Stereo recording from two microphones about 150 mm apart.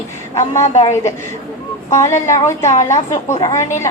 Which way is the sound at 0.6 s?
50° left (ahead or behind).